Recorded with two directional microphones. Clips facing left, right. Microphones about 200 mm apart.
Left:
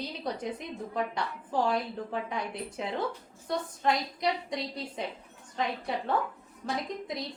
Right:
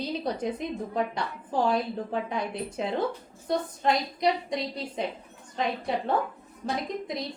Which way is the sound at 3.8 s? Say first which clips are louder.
Right 3 dB; 20° right (ahead or behind).